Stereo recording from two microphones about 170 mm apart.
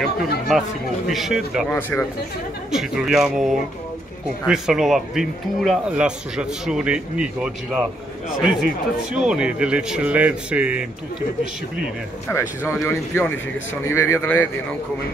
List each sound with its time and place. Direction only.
0.0 s speech: centre (ahead or behind)
1.7 s speech: 10° left (ahead or behind)
2.7 s speech: centre (ahead or behind)
9.1 s a man's voice: 5° right (ahead or behind)
12.3 s speech: 15° left (ahead or behind)